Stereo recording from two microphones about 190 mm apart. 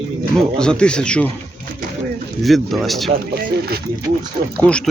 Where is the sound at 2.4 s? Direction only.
Centre (ahead or behind).